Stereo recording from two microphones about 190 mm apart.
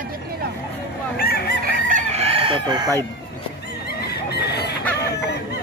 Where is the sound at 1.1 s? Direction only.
55° left (ahead or behind).